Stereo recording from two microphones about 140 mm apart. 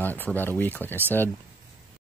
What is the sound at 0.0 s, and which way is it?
Speech, 15° left (ahead or behind).